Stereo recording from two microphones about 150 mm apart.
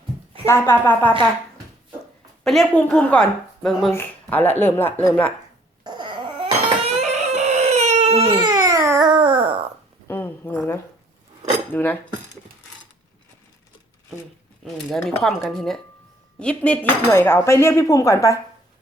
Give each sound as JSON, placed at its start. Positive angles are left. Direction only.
{"t": 0.4, "sound": "speech", "side_deg": 15}
{"t": 2.4, "sound": "a woman's voice", "side_deg": 5}
{"t": 5.8, "sound": "a sound", "side_deg": -30}
{"t": 7.3, "sound": "baby cry", "side_deg": -50}
{"t": 8.4, "sound": "babbling", "side_deg": -25}
{"t": 9.0, "sound": "dog", "side_deg": -35}
{"t": 10.1, "sound": "a sound", "side_deg": 15}
{"t": 11.7, "sound": "cutlery", "side_deg": 15}
{"t": 14.6, "sound": "a woman's voice", "side_deg": 0}